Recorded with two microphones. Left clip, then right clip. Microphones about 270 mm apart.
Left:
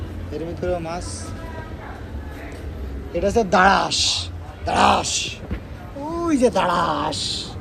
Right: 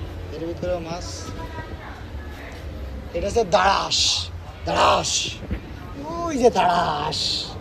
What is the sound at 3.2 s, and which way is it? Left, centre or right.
A man's voice, centre.